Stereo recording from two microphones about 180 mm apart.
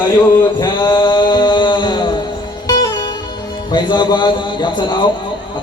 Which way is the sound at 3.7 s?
25° left (ahead or behind).